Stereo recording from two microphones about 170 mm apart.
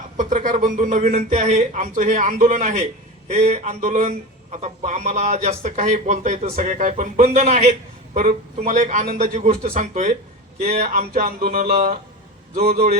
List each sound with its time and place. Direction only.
0.2 s speech: 50° right (ahead or behind)
10.8 s music: 55° right (ahead or behind)